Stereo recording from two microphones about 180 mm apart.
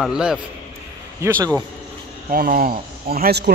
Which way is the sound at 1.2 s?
15° right (ahead or behind).